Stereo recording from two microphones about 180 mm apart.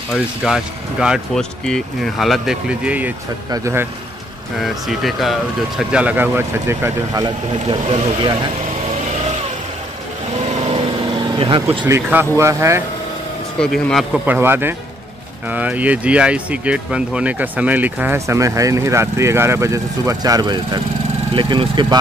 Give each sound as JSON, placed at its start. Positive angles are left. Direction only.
{"t": 0.1, "sound": "speech", "side_deg": 0}
{"t": 4.6, "sound": "speech", "side_deg": 0}
{"t": 7.7, "sound": "speech", "side_deg": -25}
{"t": 10.7, "sound": "vehicle", "side_deg": -30}
{"t": 11.8, "sound": "speech", "side_deg": -10}
{"t": 13.6, "sound": "speech", "side_deg": 5}
{"t": 14.2, "sound": "speech", "side_deg": -10}